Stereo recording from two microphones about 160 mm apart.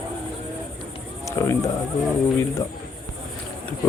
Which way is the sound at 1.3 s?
20° left (ahead or behind).